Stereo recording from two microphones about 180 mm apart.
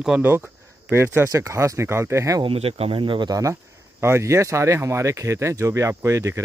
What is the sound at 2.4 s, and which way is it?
Speech, 30° right (ahead or behind).